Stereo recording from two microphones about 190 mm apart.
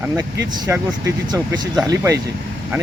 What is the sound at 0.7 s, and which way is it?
Speech, 10° right (ahead or behind).